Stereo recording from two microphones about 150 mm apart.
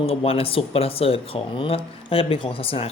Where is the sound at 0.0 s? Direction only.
40° left (ahead or behind).